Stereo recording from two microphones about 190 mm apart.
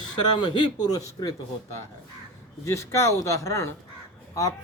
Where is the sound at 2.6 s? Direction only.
15° left (ahead or behind).